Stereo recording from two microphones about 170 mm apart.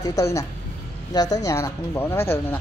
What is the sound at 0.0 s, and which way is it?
A woman's voice, 20° left (ahead or behind).